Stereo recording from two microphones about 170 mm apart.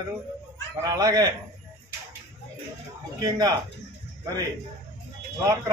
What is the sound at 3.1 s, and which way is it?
Speech, 20° right (ahead or behind).